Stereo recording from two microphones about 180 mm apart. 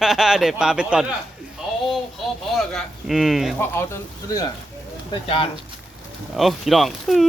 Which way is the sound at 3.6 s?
15° left (ahead or behind).